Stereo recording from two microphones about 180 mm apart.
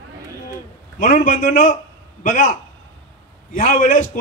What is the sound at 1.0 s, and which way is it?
A man's voice, 45° left (ahead or behind).